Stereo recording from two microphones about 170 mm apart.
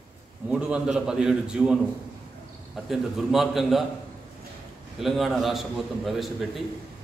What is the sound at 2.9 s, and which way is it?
Speech, centre (ahead or behind).